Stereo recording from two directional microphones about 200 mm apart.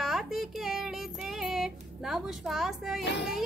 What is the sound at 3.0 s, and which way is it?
Child singing, 60° left (ahead or behind).